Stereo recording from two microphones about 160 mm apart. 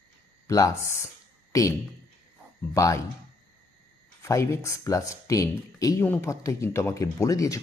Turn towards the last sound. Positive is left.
turn(degrees=20)  # may be behind; listen again after turning